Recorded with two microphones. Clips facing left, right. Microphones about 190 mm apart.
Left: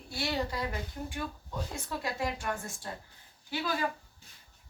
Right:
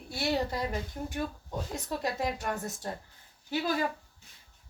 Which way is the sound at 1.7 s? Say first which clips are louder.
Right 4 dB; 40° right (ahead or behind).